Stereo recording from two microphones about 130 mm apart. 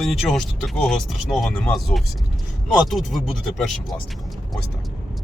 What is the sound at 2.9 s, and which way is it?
Speech, centre (ahead or behind).